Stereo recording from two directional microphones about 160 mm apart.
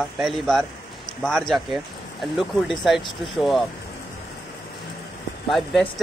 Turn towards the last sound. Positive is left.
turn(degrees=0)  # may be behind; listen again after turning